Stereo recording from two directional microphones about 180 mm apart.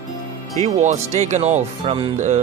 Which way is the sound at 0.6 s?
40° right (ahead or behind).